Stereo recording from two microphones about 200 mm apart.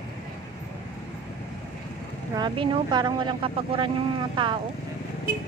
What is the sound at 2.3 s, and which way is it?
Speech, 20° right (ahead or behind).